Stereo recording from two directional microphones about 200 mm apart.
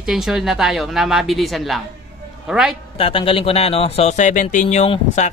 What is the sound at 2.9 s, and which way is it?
Speech, 25° left (ahead or behind).